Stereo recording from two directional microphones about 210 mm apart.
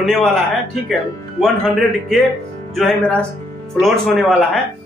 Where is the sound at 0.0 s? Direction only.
Centre (ahead or behind).